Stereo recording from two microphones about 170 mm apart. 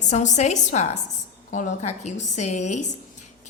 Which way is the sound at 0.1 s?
45° left (ahead or behind).